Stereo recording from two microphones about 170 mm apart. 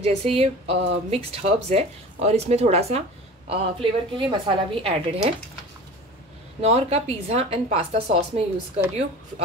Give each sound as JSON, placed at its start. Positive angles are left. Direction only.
{"t": 0.0, "sound": "speech", "side_deg": -40}
{"t": 6.6, "sound": "speech", "side_deg": -40}